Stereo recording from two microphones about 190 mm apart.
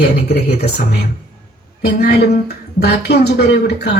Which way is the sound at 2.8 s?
60° left (ahead or behind).